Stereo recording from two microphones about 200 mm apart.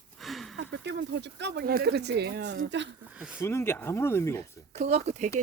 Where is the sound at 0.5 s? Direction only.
65° right (ahead or behind).